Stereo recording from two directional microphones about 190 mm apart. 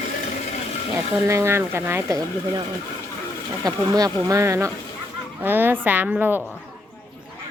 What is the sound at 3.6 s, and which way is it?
Speech, 20° right (ahead or behind).